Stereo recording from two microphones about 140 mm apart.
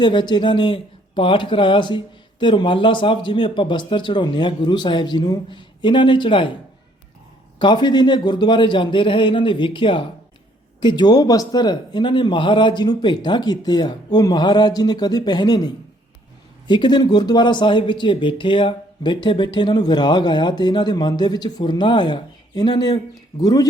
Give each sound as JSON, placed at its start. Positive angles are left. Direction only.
{"t": 0.0, "sound": "speech", "side_deg": 30}
{"t": 7.6, "sound": "speech", "side_deg": 35}